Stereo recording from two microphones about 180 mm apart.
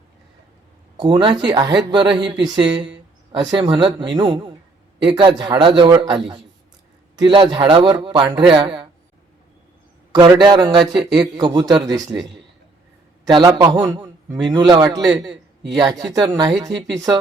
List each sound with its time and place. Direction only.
0.9 s speech: 25° right (ahead or behind)
10.1 s a man's voice: 25° right (ahead or behind)
14.4 s speech: 25° right (ahead or behind)